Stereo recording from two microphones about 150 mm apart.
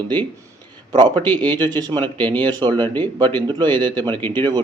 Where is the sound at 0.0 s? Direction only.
30° right (ahead or behind).